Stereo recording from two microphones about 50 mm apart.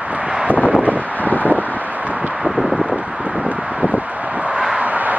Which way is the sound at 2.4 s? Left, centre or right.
Centre.